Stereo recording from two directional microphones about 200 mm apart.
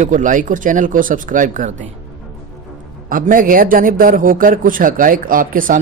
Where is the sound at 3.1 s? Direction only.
45° right (ahead or behind).